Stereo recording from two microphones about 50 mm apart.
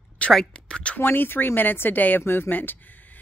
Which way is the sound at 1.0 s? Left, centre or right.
Left.